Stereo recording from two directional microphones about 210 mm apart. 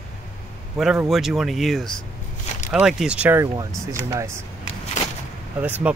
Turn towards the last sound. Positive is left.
turn(degrees=-10)  # may be behind; listen again after turning